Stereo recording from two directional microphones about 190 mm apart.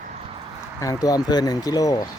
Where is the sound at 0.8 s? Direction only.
20° left (ahead or behind).